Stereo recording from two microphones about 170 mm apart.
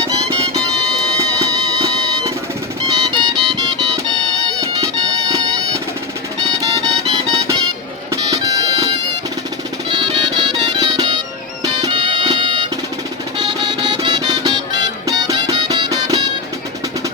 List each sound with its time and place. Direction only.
0.1 s music: 25° right (ahead or behind)
2.9 s music: 25° right (ahead or behind)
8.1 s bagpipes: 20° right (ahead or behind)
9.9 s music: 30° right (ahead or behind)